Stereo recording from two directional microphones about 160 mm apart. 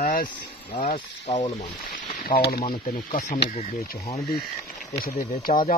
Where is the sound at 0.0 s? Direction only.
60° left (ahead or behind).